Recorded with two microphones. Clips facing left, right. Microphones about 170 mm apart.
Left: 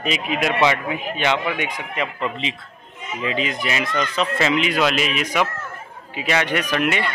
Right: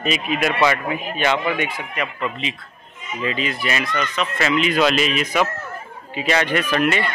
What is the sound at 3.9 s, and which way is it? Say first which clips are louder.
Speech: left 2 dB; 30° left (ahead or behind).